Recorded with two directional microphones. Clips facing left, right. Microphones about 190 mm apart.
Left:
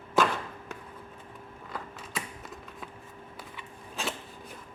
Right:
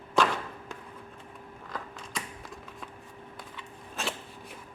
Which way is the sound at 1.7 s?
5° left (ahead or behind).